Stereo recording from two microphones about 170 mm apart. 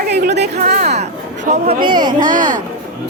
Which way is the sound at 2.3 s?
50° right (ahead or behind).